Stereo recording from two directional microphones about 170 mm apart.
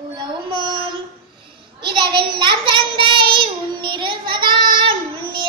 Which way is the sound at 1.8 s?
30° right (ahead or behind).